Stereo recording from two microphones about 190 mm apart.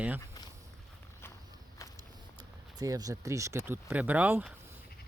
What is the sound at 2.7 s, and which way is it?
Speech, 20° right (ahead or behind).